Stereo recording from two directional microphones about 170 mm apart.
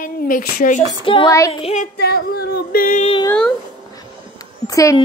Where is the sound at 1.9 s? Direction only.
65° left (ahead or behind).